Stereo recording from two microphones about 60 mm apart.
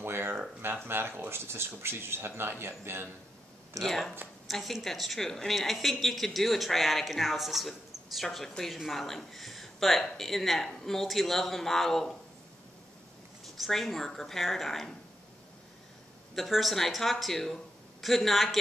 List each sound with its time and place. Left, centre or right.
0.0 s a sound: right
0.8 s speech: right
3.8 s speech: centre
13.6 s speech: centre
16.3 s speech: centre